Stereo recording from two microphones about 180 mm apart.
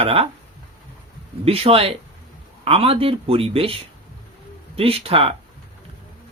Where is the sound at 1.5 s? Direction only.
30° right (ahead or behind).